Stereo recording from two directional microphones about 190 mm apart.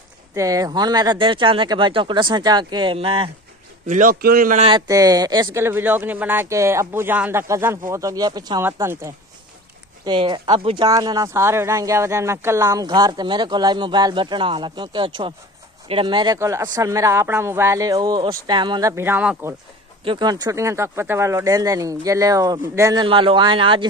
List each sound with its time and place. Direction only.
0.3 s speech: 15° right (ahead or behind)
3.9 s a man's voice: 45° right (ahead or behind)
4.6 s speech: 20° right (ahead or behind)
10.0 s speech: 25° right (ahead or behind)
20.1 s speech: 20° right (ahead or behind)